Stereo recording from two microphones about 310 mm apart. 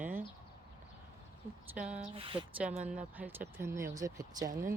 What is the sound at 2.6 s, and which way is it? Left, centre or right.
Speech, centre.